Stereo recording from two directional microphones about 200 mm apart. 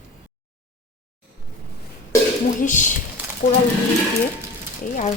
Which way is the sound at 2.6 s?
40° left (ahead or behind).